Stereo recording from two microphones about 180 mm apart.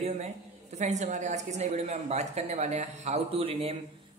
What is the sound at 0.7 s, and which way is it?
A woman's voice, 40° right (ahead or behind).